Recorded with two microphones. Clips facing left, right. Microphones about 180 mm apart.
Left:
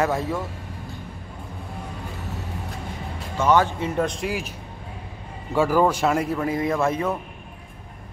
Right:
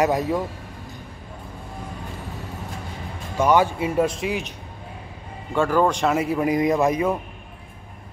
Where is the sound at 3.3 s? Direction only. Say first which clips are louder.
Right 1 dB; 10° right (ahead or behind).